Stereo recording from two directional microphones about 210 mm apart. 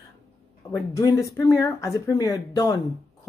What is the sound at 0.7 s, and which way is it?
Speech, 15° left (ahead or behind).